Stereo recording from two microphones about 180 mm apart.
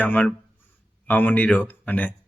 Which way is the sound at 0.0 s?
10° left (ahead or behind).